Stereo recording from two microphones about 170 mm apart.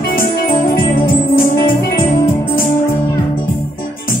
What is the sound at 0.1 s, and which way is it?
Music, 60° left (ahead or behind).